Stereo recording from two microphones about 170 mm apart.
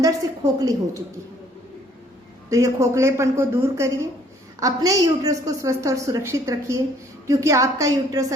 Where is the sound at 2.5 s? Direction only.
20° right (ahead or behind).